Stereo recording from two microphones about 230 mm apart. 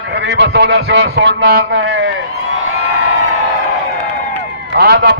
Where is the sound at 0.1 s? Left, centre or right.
Right.